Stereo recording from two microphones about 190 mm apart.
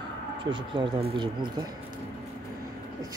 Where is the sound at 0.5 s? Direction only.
25° right (ahead or behind).